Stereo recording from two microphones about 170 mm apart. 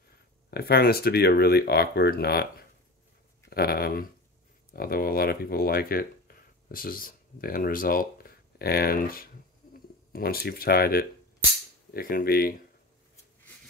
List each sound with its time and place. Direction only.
0.5 s speech: 70° left (ahead or behind)